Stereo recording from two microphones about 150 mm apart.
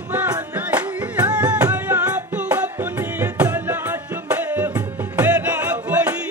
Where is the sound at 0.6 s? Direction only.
10° right (ahead or behind).